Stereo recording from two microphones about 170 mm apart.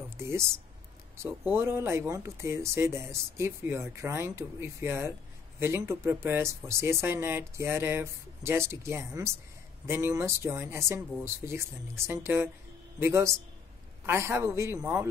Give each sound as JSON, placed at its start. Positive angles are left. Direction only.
{"t": 0.2, "sound": "speech", "side_deg": -15}